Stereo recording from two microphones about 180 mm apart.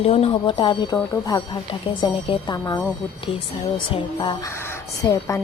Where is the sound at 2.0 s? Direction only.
25° left (ahead or behind).